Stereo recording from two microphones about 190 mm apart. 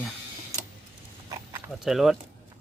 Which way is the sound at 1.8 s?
Centre (ahead or behind).